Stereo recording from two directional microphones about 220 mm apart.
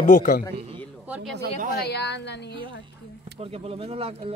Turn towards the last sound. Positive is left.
turn(degrees=-25)  # may be behind; listen again after turning